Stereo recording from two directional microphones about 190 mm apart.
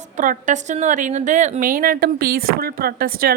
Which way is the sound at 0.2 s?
40° right (ahead or behind).